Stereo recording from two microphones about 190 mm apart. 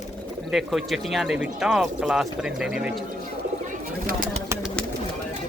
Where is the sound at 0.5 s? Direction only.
Centre (ahead or behind).